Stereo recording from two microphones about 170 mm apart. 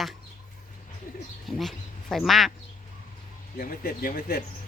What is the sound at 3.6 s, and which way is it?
Speech, 60° left (ahead or behind).